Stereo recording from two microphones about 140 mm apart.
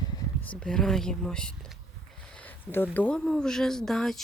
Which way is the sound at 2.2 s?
10° left (ahead or behind).